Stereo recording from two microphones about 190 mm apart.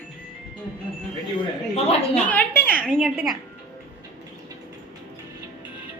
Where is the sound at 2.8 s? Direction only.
Centre (ahead or behind).